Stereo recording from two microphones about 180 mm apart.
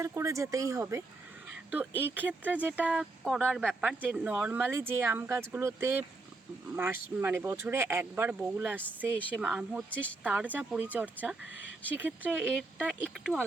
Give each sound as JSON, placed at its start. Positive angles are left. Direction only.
{"t": 0.0, "sound": "speech", "side_deg": -15}